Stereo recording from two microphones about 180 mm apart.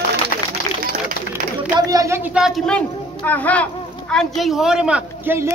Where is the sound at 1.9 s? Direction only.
15° right (ahead or behind).